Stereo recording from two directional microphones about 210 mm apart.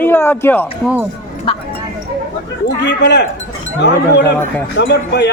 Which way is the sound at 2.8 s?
55° left (ahead or behind).